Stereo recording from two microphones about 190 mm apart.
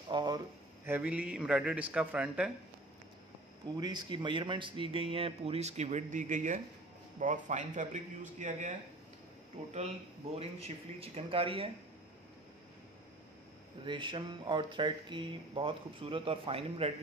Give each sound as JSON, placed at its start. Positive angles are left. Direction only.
{"t": 0.1, "sound": "a sound", "side_deg": -25}
{"t": 0.8, "sound": "a man's voice", "side_deg": -10}
{"t": 3.6, "sound": "speech", "side_deg": -20}
{"t": 13.8, "sound": "speech", "side_deg": -25}